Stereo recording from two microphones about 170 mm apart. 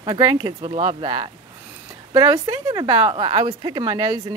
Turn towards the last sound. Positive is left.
turn(degrees=-25)  # may be behind; listen again after turning